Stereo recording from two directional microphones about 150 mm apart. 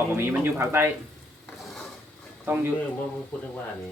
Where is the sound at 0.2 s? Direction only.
15° right (ahead or behind).